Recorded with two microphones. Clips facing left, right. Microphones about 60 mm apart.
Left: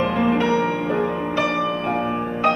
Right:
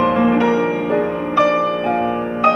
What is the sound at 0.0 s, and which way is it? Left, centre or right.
Music, right.